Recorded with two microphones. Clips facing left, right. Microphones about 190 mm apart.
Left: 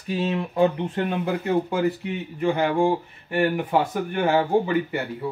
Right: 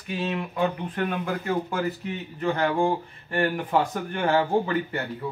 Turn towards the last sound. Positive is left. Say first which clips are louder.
# left 3 dB
turn(degrees=10)  # may be behind; listen again after turning